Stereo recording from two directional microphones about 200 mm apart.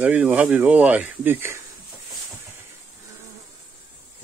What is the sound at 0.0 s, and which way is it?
Speech, 5° right (ahead or behind).